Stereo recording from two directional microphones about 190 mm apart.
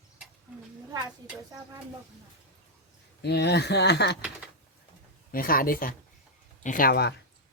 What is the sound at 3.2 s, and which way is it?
Speech, 60° left (ahead or behind).